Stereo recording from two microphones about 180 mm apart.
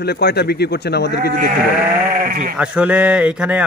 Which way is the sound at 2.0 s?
55° right (ahead or behind).